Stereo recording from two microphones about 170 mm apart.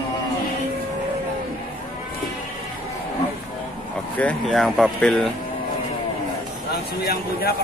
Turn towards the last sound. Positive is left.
turn(degrees=60)  # may be behind; listen again after turning